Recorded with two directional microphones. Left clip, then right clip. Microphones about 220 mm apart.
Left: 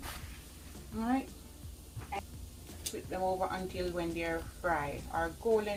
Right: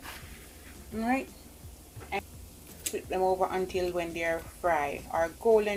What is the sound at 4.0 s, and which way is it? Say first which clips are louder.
Speech: right 5 dB; 30° right (ahead or behind).